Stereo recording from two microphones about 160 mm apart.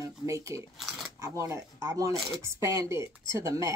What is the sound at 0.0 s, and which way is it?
Speech, 20° right (ahead or behind).